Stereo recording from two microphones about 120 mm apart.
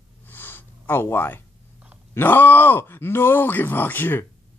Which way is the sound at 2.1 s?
15° left (ahead or behind).